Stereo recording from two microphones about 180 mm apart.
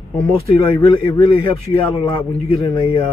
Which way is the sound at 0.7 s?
20° left (ahead or behind).